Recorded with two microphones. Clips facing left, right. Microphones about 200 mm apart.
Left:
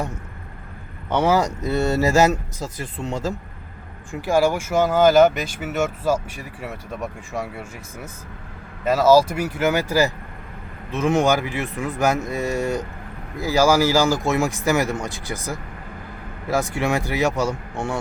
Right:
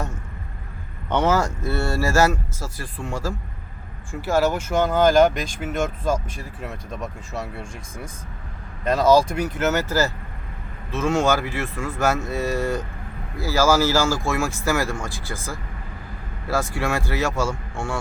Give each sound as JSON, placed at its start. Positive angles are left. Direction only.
{"t": 1.1, "sound": "speech", "side_deg": 10}